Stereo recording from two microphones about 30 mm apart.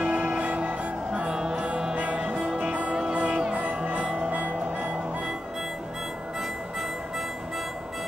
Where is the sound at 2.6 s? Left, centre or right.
Right.